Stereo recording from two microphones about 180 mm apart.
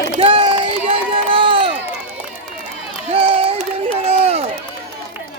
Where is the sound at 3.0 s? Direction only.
30° right (ahead or behind).